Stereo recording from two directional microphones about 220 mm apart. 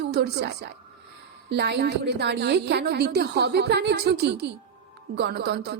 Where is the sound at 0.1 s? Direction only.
45° right (ahead or behind).